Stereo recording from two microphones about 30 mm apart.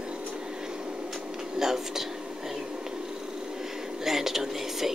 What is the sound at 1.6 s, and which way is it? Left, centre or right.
Speech, centre.